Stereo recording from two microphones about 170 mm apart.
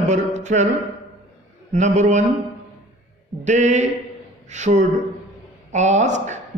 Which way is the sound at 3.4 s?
45° right (ahead or behind).